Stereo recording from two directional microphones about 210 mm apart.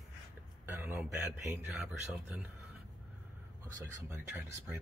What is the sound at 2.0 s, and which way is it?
Speech, 10° right (ahead or behind).